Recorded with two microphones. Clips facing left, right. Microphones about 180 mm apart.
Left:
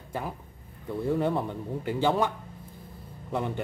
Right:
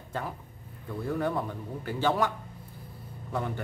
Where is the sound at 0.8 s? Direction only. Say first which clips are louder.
Left 4 dB; 20° left (ahead or behind).